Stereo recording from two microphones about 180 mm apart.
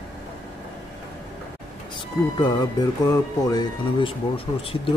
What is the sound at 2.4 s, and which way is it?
Speech, 20° left (ahead or behind).